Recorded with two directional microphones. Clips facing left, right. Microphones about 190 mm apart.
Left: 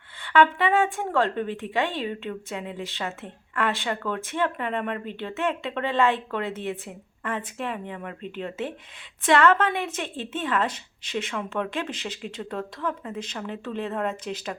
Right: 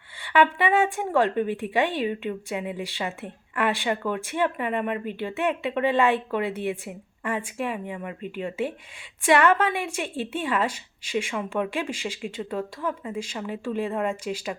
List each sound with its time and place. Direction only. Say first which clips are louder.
0.2 s speech: left 1 dB; 15° right (ahead or behind)